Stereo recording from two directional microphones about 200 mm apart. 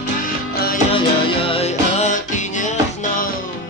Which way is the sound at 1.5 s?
30° left (ahead or behind).